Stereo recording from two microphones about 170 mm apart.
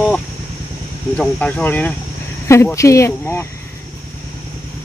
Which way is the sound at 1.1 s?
5° left (ahead or behind).